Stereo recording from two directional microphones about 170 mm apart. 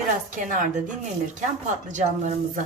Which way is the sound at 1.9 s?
45° right (ahead or behind).